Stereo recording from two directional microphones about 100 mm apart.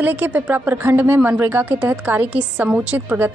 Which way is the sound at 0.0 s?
20° right (ahead or behind).